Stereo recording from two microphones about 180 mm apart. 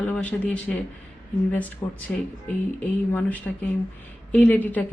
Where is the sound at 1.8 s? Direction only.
15° left (ahead or behind).